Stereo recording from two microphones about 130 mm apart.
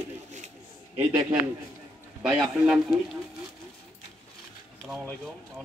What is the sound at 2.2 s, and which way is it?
Speech, 5° right (ahead or behind).